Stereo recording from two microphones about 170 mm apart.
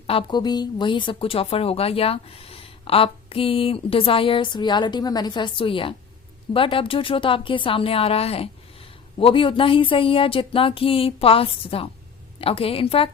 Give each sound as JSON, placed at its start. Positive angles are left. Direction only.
{"t": 0.1, "sound": "speech", "side_deg": 30}